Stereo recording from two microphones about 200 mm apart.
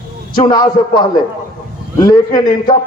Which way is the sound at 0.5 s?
20° left (ahead or behind).